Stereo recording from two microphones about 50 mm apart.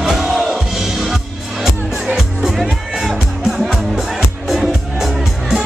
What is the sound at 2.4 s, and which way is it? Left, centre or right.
Music, centre.